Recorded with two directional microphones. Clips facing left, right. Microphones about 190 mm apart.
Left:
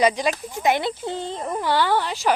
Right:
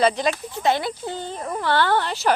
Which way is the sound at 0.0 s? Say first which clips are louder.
Even; 15° left (ahead or behind).